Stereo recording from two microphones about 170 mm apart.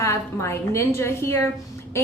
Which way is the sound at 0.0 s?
15° left (ahead or behind).